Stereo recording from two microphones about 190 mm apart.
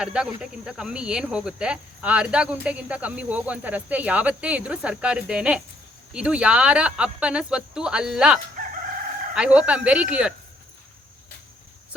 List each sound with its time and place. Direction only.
0.0 s cricket: 5° right (ahead or behind)